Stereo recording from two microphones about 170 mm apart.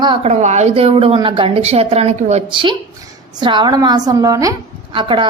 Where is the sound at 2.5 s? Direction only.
30° right (ahead or behind).